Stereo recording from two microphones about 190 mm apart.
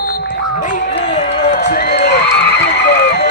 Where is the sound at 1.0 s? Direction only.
35° left (ahead or behind).